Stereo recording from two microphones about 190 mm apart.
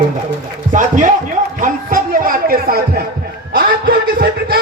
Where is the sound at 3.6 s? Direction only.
55° right (ahead or behind).